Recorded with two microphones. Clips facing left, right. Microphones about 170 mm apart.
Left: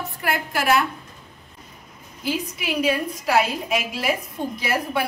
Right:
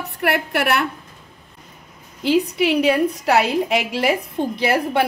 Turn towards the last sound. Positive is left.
turn(degrees=-65)  # may be behind; listen again after turning